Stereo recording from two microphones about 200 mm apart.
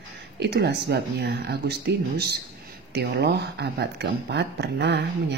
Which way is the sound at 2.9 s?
55° right (ahead or behind).